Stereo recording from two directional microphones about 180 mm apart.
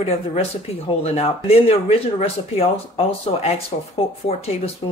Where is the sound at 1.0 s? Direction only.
35° left (ahead or behind).